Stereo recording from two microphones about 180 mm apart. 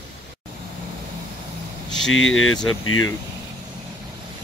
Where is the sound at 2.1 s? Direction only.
90° left.